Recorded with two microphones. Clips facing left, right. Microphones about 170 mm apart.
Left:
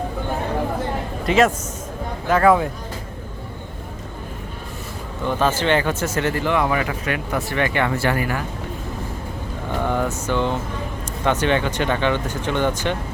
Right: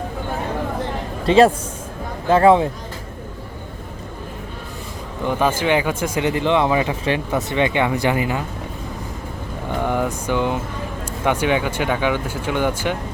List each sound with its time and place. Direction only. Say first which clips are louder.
1.3 s a man's voice: right 4 dB; 30° right (ahead or behind)
5.2 s speech: right 1 dB; 15° right (ahead or behind)
9.8 s speech: right 1 dB; 15° right (ahead or behind)